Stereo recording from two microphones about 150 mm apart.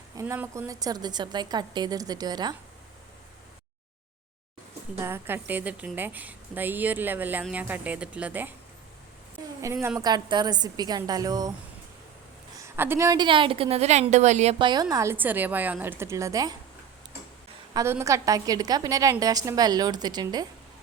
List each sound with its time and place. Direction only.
0.2 s a woman's voice: 20° right (ahead or behind)
4.9 s a woman's voice: 15° right (ahead or behind)
9.7 s a woman's voice: 20° right (ahead or behind)
12.5 s a woman's voice: 15° right (ahead or behind); by 14.5 s 50° right (ahead or behind)
14.6 s a woman's voice: 30° right (ahead or behind)
17.7 s a woman's voice: 20° right (ahead or behind)